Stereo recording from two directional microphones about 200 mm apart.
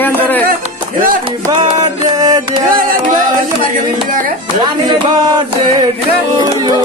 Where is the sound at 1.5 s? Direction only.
20° right (ahead or behind).